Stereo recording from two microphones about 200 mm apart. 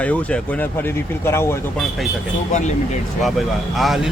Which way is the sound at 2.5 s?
35° left (ahead or behind).